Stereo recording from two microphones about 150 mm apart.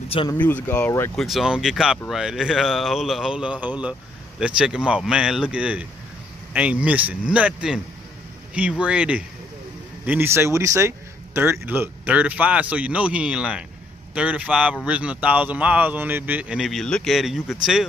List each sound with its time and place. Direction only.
0.2 s speech: 35° left (ahead or behind)
0.7 s speech: 10° left (ahead or behind)
1.1 s speech: centre (ahead or behind)